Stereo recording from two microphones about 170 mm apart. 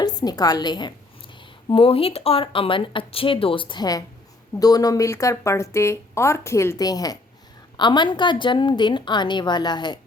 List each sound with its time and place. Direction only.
0.0 s a woman's voice: 25° left (ahead or behind)